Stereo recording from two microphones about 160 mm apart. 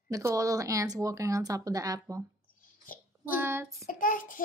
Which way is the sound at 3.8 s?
60° left (ahead or behind).